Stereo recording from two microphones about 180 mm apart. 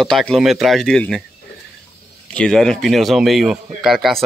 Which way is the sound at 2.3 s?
5° left (ahead or behind).